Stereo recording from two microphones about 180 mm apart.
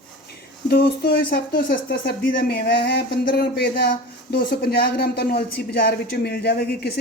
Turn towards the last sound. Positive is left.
turn(degrees=65)  # may be behind; listen again after turning